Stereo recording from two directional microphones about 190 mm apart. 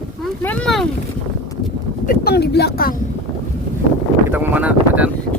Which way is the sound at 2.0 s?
50° left (ahead or behind).